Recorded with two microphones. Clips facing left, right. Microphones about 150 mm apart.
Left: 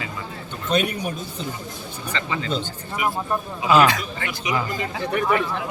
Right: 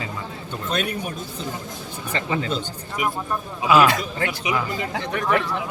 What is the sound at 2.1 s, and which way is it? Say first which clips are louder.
Speech: right 3 dB; 50° right (ahead or behind).